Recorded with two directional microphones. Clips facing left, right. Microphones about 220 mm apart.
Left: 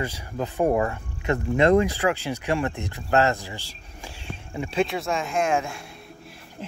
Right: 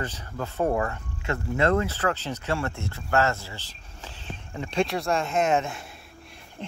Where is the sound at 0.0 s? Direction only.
10° left (ahead or behind).